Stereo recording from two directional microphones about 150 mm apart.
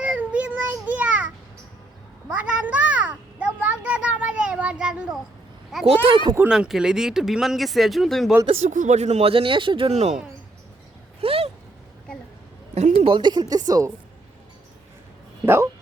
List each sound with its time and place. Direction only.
0.0 s child singing: 5° right (ahead or behind)
2.3 s a sound: 10° right (ahead or behind)
5.8 s a woman's voice: 40° right (ahead or behind)
6.3 s speech: 10° right (ahead or behind)
8.4 s speech: 55° right (ahead or behind)
11.2 s a sound: 40° right (ahead or behind)
12.7 s a woman's voice: 45° right (ahead or behind); by 13.9 s 25° right (ahead or behind)